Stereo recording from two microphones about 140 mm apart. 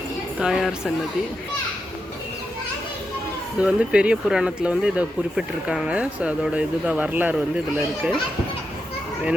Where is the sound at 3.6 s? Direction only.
10° right (ahead or behind).